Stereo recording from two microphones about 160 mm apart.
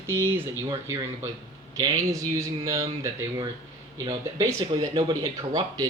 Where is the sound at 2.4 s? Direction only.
20° right (ahead or behind).